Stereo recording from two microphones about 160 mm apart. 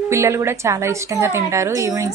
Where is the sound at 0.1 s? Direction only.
20° right (ahead or behind).